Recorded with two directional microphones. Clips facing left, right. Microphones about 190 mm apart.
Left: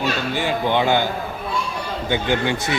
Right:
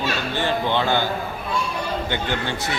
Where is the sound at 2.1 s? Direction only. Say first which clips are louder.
Left 5 dB; 15° left (ahead or behind).